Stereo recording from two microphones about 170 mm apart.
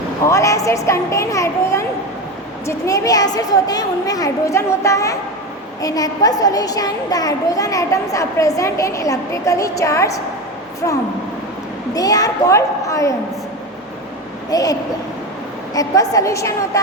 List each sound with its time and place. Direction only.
0.3 s a child's voice: 20° left (ahead or behind)
14.5 s a child's voice: 20° left (ahead or behind)